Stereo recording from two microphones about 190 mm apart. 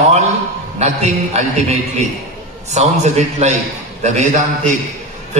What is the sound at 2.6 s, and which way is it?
A man's voice, 35° right (ahead or behind).